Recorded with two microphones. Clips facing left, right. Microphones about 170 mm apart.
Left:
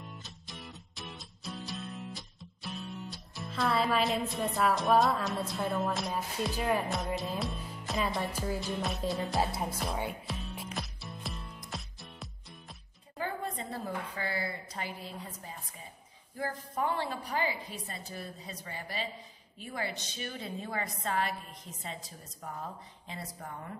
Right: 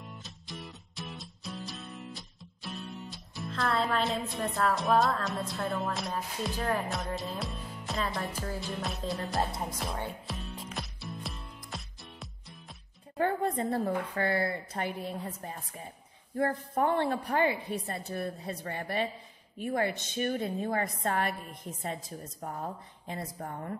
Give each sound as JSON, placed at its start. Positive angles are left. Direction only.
{"t": 0.0, "sound": "music", "side_deg": 0}
{"t": 13.2, "sound": "a woman's voice", "side_deg": -55}
{"t": 22.4, "sound": "a woman's voice", "side_deg": -45}